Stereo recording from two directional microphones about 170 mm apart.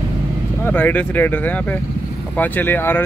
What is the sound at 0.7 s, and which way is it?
Speech, 10° left (ahead or behind).